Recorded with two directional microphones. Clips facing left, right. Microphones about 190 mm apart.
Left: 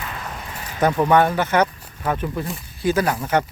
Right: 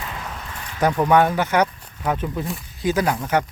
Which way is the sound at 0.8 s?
10° right (ahead or behind).